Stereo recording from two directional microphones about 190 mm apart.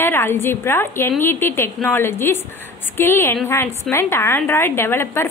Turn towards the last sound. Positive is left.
turn(degrees=15)  # may be behind; listen again after turning